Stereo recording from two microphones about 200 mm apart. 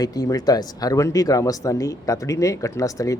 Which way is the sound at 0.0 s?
20° left (ahead or behind).